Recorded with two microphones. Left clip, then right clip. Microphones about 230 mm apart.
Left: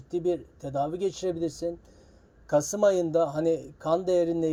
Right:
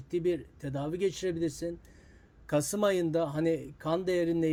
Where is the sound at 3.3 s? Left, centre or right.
Right.